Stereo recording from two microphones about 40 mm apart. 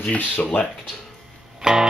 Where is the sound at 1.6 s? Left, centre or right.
Centre.